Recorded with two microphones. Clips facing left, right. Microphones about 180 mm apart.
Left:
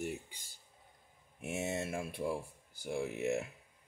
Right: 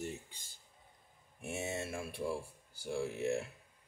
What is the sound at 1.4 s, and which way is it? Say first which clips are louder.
Speech: left 2 dB; 20° left (ahead or behind).